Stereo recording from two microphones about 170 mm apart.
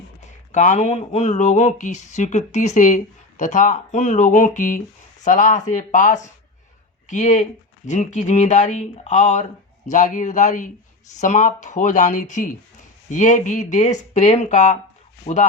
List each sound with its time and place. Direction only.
0.5 s speech: 45° left (ahead or behind)